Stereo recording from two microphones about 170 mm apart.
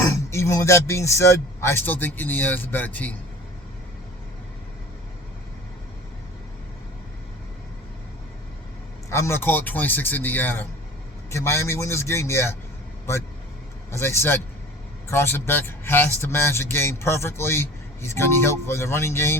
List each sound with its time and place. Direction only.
0.0 s a man's voice: 15° left (ahead or behind)
9.0 s a man's voice: 15° left (ahead or behind)
13.9 s a man's voice: 15° left (ahead or behind)